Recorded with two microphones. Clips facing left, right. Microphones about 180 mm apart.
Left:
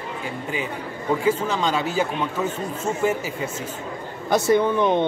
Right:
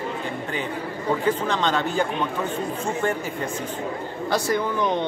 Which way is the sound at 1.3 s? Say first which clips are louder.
Left 1 dB; 10° left (ahead or behind).